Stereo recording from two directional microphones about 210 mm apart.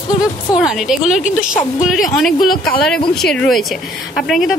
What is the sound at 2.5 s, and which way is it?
Speech, 45° left (ahead or behind).